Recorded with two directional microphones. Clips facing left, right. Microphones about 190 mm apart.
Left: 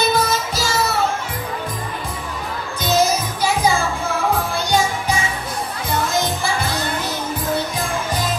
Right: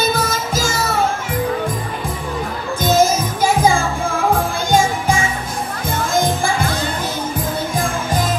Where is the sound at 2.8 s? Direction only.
50° right (ahead or behind).